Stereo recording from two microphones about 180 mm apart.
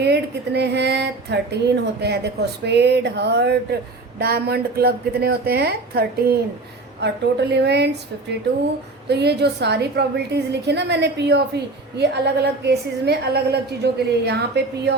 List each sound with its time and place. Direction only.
0.0 s a woman's voice: 65° right (ahead or behind)
9.0 s a woman's voice: 70° right (ahead or behind)